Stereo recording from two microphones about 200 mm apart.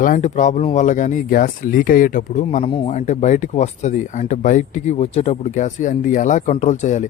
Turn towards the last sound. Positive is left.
turn(degrees=35)  # may be behind; listen again after turning